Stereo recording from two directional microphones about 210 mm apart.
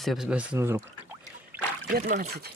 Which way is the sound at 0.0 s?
Centre (ahead or behind).